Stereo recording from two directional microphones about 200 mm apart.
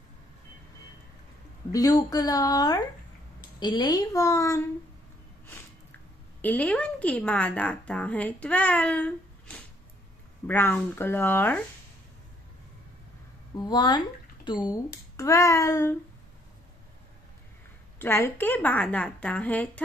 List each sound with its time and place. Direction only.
1.7 s a woman's voice: 15° left (ahead or behind)
6.4 s a woman's voice: 10° left (ahead or behind)
13.6 s a woman's voice: 20° left (ahead or behind)
17.9 s a woman's voice: 10° left (ahead or behind)